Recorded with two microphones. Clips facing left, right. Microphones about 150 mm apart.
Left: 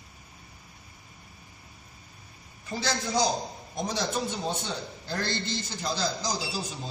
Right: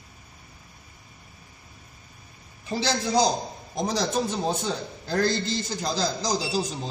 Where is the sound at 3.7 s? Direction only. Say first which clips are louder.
Right 5 dB; 40° right (ahead or behind).